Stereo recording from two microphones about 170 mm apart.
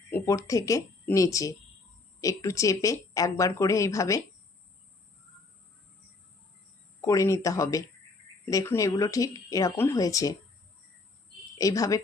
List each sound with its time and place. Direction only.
0.1 s a woman's voice: 15° left (ahead or behind)
7.0 s a woman's voice: 20° left (ahead or behind)
11.5 s a woman's voice: 20° left (ahead or behind)